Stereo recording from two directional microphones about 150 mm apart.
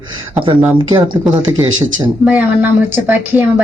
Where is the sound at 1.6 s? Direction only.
30° right (ahead or behind).